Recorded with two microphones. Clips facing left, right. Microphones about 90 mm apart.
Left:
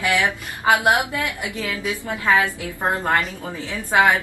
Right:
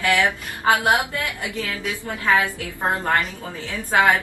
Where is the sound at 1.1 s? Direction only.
20° left (ahead or behind).